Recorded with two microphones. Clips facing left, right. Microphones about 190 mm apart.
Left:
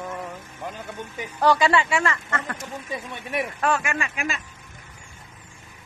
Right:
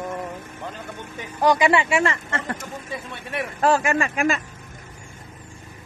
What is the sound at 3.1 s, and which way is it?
Speech, 15° left (ahead or behind).